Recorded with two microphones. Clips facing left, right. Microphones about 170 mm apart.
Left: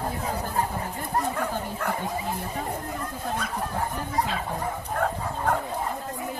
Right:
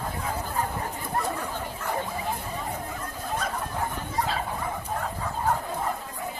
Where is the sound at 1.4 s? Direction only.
60° left (ahead or behind).